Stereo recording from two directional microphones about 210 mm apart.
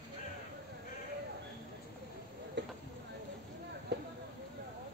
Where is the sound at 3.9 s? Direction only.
55° right (ahead or behind).